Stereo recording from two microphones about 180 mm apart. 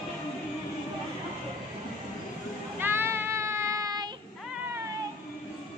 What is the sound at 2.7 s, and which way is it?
Child singing, 10° right (ahead or behind).